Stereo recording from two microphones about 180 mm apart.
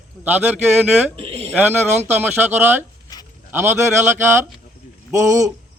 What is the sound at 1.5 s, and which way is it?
A man's voice, 10° right (ahead or behind).